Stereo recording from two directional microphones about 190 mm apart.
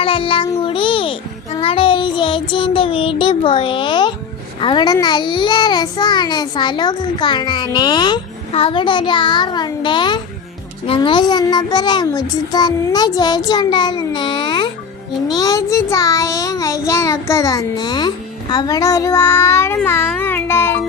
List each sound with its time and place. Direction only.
0.0 s child singing: 30° left (ahead or behind)
0.6 s a sound: 25° left (ahead or behind)
1.5 s child singing: 30° left (ahead or behind)
4.6 s a child's voice: 25° left (ahead or behind)
15.3 s child singing: 20° left (ahead or behind)